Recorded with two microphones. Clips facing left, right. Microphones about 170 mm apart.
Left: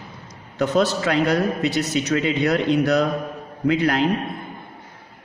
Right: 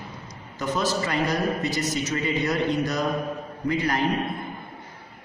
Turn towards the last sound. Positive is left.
turn(degrees=70)  # may be behind; listen again after turning